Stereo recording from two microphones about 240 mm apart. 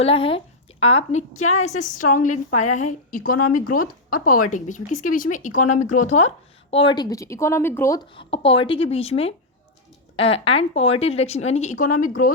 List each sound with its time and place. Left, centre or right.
0.0 s speech: left